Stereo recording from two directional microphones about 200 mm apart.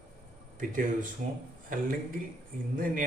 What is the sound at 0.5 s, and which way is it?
Speech, 40° right (ahead or behind).